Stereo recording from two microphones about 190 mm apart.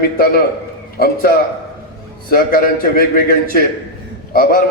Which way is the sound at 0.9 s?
50° left (ahead or behind).